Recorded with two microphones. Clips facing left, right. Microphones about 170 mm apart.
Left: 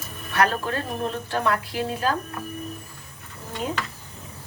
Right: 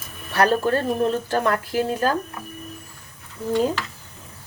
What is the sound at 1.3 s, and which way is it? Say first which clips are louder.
Speech: right 3 dB; 45° right (ahead or behind).